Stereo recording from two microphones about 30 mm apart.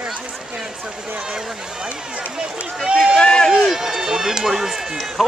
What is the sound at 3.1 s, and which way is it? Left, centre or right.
Speech, left.